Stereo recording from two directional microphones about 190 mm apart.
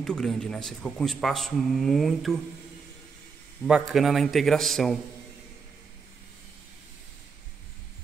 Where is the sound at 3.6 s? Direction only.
5° right (ahead or behind).